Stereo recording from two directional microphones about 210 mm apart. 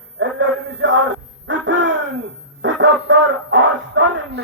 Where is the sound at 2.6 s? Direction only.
60° right (ahead or behind).